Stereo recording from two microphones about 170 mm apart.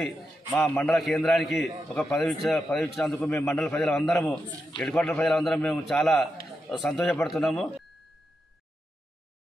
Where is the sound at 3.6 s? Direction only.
5° left (ahead or behind).